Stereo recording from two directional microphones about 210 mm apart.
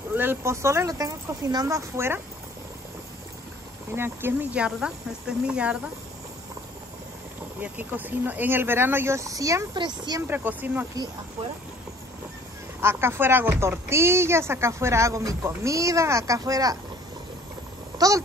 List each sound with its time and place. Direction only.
0.1 s speech: 10° right (ahead or behind)
3.9 s speech: 10° right (ahead or behind)
7.6 s speech: 10° right (ahead or behind)
10.2 s speech: 10° right (ahead or behind)
12.8 s speech: 10° right (ahead or behind)
17.9 s speech: 15° right (ahead or behind)